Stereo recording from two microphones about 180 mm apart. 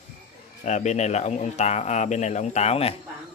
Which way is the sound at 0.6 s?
40° left (ahead or behind).